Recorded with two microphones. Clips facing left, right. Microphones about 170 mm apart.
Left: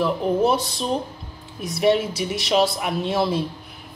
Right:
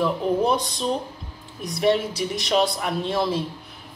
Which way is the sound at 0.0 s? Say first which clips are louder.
Left 2 dB; 5° left (ahead or behind).